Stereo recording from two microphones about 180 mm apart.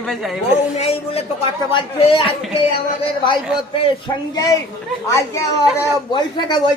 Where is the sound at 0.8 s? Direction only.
35° left (ahead or behind).